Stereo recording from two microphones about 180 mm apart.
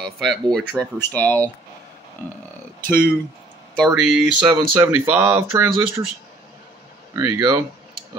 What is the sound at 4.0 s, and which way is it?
Speech, 5° right (ahead or behind).